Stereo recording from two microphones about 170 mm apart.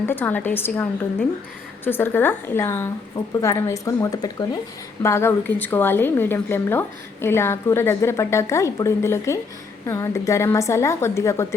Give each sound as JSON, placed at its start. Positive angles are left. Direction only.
{"t": 0.0, "sound": "a woman's voice", "side_deg": 10}